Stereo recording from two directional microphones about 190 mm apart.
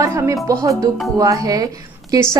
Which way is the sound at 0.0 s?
15° right (ahead or behind).